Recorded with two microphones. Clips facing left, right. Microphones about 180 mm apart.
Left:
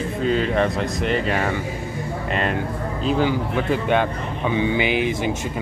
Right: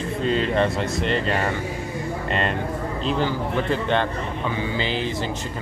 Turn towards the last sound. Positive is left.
turn(degrees=15)  # may be behind; listen again after turning